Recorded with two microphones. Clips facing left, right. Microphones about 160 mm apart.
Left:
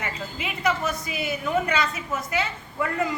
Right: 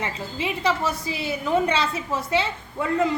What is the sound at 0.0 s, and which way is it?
A woman's voice, 30° right (ahead or behind).